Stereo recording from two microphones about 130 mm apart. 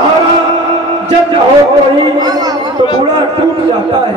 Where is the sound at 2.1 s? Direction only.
30° right (ahead or behind).